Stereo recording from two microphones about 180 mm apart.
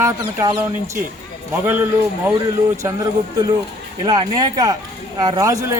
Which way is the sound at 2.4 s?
20° right (ahead or behind).